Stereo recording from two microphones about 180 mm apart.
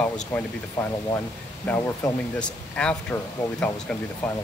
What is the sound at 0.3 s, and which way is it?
Speech, 15° left (ahead or behind).